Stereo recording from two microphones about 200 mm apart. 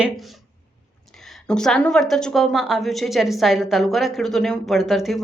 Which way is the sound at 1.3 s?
5° left (ahead or behind).